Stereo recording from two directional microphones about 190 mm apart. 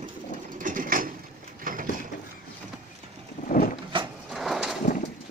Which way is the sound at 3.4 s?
45° left (ahead or behind).